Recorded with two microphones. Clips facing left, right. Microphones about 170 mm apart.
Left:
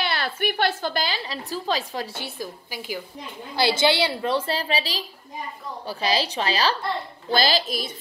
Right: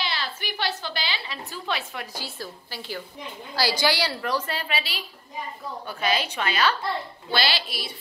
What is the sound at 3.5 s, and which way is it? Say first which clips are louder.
A woman's voice: left 4 dB; 20° left (ahead or behind).